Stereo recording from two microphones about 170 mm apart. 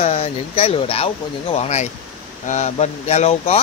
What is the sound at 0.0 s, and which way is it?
Speech, 40° left (ahead or behind).